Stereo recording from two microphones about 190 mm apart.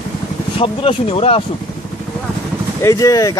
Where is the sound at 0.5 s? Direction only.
30° left (ahead or behind).